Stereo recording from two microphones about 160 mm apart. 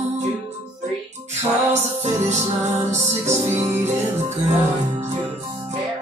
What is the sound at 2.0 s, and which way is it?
Music, 45° right (ahead or behind).